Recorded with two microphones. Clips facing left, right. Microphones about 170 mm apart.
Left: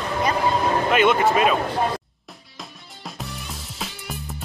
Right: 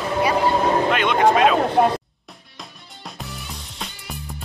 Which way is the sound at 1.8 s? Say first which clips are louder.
Right 7 dB; 70° right (ahead or behind).